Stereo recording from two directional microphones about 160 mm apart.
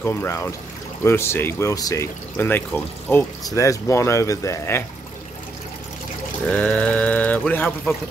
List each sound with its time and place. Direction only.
0.0 s speech: 15° left (ahead or behind)
6.5 s pour: 5° left (ahead or behind)